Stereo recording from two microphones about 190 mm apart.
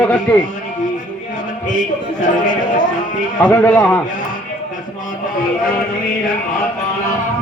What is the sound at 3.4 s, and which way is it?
Speech, 10° left (ahead or behind).